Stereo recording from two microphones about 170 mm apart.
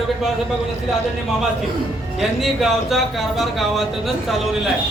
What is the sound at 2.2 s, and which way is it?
A man's voice, centre (ahead or behind).